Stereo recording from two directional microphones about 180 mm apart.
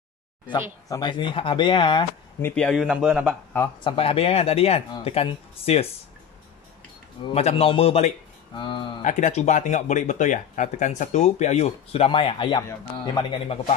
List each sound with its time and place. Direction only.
0.5 s speech: 20° left (ahead or behind)
2.4 s a man's voice: 5° left (ahead or behind)
3.8 s speech: 30° left (ahead or behind)
7.3 s speech: 35° left (ahead or behind)
9.0 s speech: 40° left (ahead or behind)